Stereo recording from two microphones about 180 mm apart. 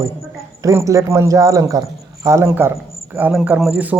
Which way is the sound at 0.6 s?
15° right (ahead or behind).